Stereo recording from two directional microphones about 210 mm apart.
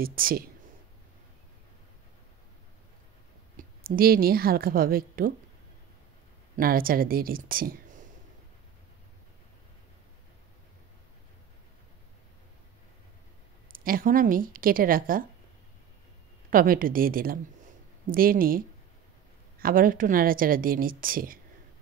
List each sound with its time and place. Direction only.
0.0 s a woman's voice: 45° right (ahead or behind)
3.5 s a woman's voice: 45° right (ahead or behind)
6.5 s speech: 45° right (ahead or behind)
13.7 s speech: 40° right (ahead or behind)
16.4 s a woman's voice: 40° right (ahead or behind)
19.6 s a woman's voice: 40° right (ahead or behind)